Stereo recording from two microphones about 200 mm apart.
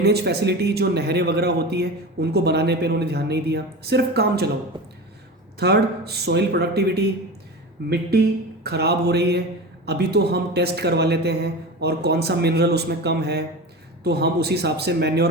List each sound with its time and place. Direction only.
0.0 s a man's voice: 55° right (ahead or behind)
5.5 s a man's voice: 55° right (ahead or behind)
8.6 s a man's voice: 55° right (ahead or behind)